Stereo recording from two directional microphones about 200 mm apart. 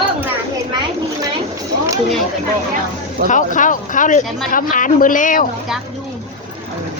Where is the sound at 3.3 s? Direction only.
40° left (ahead or behind).